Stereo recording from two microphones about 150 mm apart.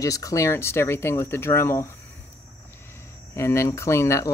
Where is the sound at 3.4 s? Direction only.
20° left (ahead or behind).